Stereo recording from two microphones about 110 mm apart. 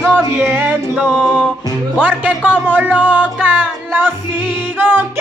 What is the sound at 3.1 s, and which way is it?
Music, 15° right (ahead or behind).